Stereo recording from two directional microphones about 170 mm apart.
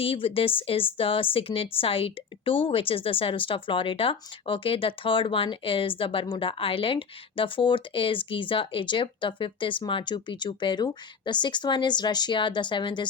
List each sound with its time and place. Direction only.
0.0 s a woman's voice: 35° left (ahead or behind)